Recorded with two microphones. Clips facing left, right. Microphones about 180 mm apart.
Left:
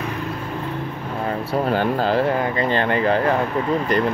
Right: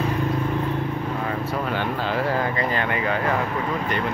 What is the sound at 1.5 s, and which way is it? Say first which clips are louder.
Speech: left 5 dB; 40° left (ahead or behind).